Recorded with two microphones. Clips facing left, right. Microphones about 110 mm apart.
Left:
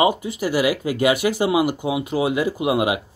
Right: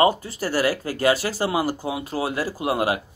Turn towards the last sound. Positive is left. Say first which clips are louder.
# left 3 dB
turn(degrees=15)  # may be behind; listen again after turning